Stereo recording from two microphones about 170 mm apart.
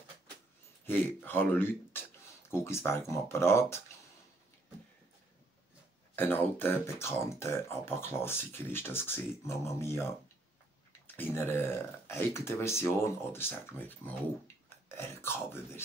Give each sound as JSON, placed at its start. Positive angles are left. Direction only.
{"t": 0.8, "sound": "speech", "side_deg": 10}
{"t": 6.1, "sound": "speech", "side_deg": 10}
{"t": 11.1, "sound": "speech", "side_deg": 15}